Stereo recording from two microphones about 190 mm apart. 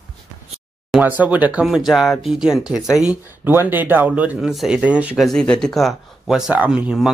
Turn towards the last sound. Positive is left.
turn(degrees=-5)  # may be behind; listen again after turning